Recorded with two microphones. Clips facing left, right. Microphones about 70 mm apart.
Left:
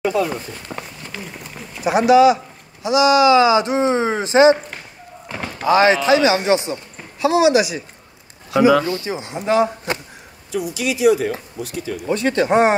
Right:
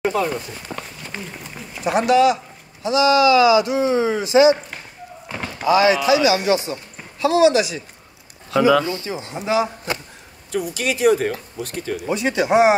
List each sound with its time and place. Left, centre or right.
0.0 s walk: right
1.7 s speech: centre
2.8 s speech: centre; by 4.6 s left
5.3 s a sound: centre
5.7 s speech: left
7.2 s speech: centre
9.1 s speech: left
9.4 s a man's voice: centre
10.5 s speech: right
12.1 s speech: centre